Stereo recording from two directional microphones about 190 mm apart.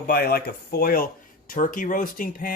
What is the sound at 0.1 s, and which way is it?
Speech, 50° left (ahead or behind).